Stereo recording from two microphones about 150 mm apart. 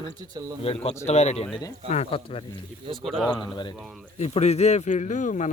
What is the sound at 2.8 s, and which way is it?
Speech, 35° right (ahead or behind).